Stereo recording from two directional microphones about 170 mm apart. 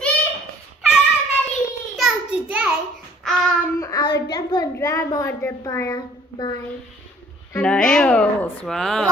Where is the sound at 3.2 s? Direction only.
Centre (ahead or behind).